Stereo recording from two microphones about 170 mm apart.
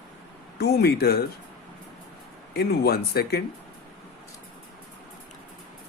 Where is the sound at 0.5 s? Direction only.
70° left (ahead or behind).